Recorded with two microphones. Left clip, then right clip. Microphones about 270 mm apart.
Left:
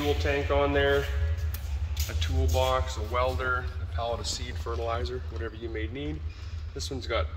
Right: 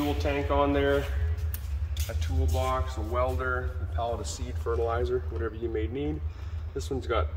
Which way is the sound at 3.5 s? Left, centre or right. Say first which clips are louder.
Even; right.